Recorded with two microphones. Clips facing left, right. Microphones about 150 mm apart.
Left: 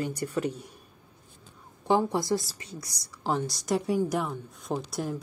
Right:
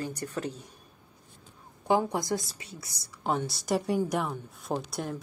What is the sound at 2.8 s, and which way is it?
A woman's voice, centre (ahead or behind).